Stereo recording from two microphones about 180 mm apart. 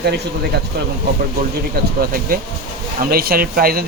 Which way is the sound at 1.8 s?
55° right (ahead or behind).